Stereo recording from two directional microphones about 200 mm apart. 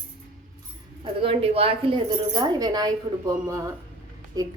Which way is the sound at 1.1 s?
30° right (ahead or behind).